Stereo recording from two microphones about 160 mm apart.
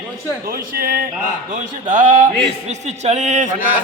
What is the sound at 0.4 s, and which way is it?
Speech, 65° right (ahead or behind).